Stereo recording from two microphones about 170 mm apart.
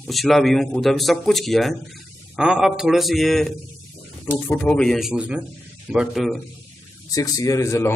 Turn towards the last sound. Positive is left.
turn(degrees=15)  # may be behind; listen again after turning